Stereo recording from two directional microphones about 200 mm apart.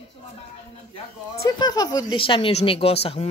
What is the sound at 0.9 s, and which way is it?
Speech, 25° left (ahead or behind).